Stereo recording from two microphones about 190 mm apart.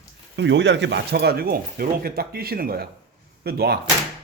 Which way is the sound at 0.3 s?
65° right (ahead or behind).